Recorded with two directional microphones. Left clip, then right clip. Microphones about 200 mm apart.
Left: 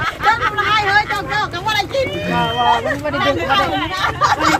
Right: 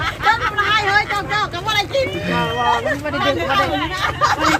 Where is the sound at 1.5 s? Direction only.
65° left (ahead or behind).